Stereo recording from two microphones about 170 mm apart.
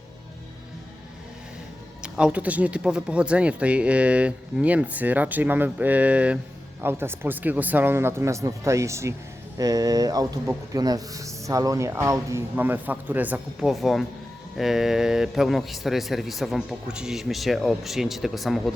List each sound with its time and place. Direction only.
2.0 s a man's voice: 5° right (ahead or behind)